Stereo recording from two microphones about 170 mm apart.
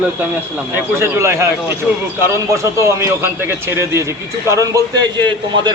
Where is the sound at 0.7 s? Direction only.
15° right (ahead or behind).